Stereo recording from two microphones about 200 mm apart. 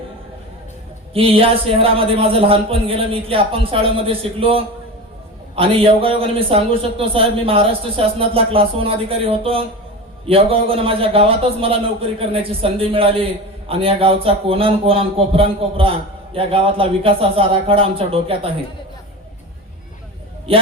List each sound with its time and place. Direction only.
1.1 s a man's voice: 30° right (ahead or behind)